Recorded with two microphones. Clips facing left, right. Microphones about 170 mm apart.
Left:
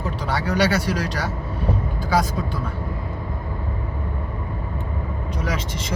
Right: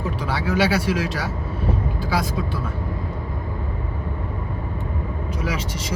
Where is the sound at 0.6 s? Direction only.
40° left (ahead or behind).